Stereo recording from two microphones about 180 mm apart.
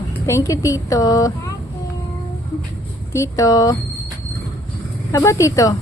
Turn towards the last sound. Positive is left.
turn(degrees=20)  # may be behind; listen again after turning